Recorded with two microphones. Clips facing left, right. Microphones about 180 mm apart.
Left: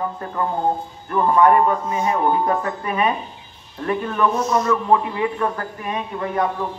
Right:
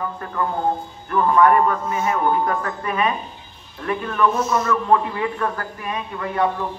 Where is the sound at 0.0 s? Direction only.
25° left (ahead or behind).